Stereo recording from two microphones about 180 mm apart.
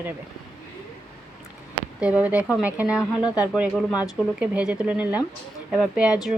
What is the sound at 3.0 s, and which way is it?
Speech, 20° left (ahead or behind).